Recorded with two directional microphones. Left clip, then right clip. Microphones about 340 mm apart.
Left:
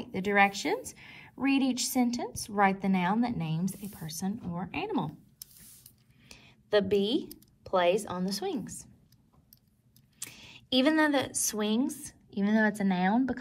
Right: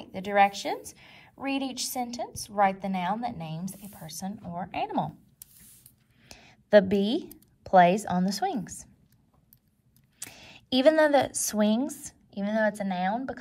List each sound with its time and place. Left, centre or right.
0.0 s a woman's voice: centre
6.2 s speech: centre
10.1 s speech: centre